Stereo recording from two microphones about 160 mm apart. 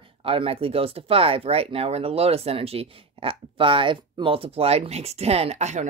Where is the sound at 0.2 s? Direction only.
35° right (ahead or behind).